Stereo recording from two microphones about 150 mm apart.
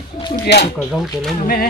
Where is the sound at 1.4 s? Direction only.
75° left (ahead or behind).